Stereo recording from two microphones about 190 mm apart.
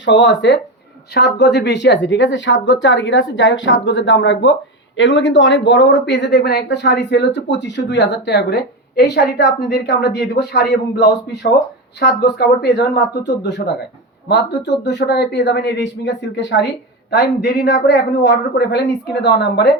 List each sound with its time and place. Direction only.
0.0 s speech: 70° left (ahead or behind)